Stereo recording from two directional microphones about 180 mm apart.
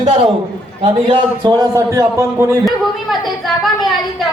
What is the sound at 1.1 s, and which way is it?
A man's voice, 25° right (ahead or behind).